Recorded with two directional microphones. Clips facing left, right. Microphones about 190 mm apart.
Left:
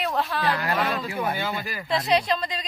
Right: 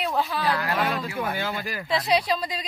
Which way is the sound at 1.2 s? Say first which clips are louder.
Left 1 dB; 15° left (ahead or behind).